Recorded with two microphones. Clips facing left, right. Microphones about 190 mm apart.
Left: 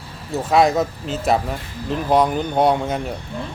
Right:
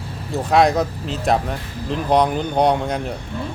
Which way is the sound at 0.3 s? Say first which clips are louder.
Even; centre (ahead or behind).